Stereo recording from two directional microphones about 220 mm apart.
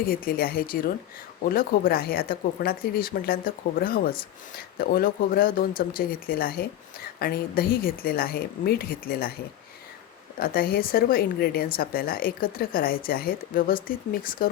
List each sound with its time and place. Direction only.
0.0 s a woman's voice: 40° left (ahead or behind)
10.3 s a woman's voice: 40° left (ahead or behind)